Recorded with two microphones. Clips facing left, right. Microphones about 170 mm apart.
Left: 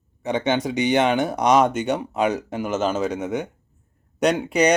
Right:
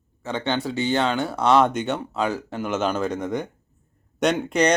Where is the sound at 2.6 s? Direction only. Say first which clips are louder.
Left 1 dB; 5° left (ahead or behind).